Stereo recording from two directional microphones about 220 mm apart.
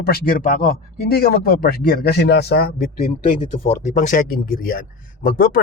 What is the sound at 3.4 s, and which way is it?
Speech, 35° left (ahead or behind).